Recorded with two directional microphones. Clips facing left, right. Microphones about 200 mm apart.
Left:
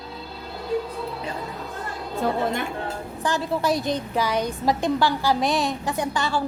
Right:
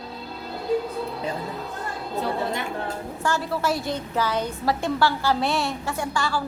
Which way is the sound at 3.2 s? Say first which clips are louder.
Left 1 dB; 15° left (ahead or behind).